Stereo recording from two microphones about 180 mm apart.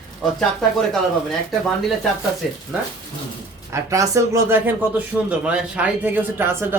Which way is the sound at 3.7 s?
15° right (ahead or behind).